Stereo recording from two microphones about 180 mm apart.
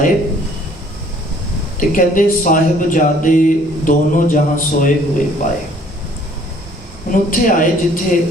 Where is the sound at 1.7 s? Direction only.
45° left (ahead or behind).